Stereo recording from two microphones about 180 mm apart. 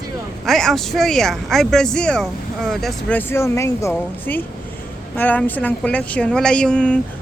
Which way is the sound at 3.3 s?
15° left (ahead or behind).